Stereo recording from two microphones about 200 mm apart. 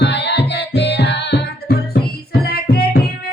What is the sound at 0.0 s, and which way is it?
Music, 55° left (ahead or behind).